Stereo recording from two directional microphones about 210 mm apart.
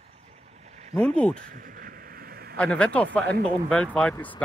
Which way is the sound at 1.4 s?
40° right (ahead or behind).